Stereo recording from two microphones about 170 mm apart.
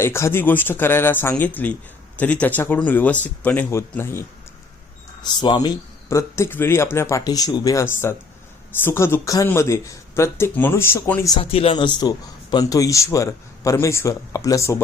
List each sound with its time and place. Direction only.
0.0 s speech: 15° left (ahead or behind)
5.2 s speech: 25° left (ahead or behind)
11.5 s a man's voice: 30° left (ahead or behind)